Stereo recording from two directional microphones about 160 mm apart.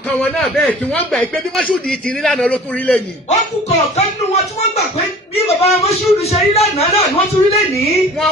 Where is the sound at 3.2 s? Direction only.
45° left (ahead or behind).